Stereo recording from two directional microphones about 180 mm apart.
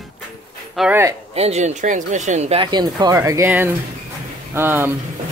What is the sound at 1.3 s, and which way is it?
Speech, 35° right (ahead or behind).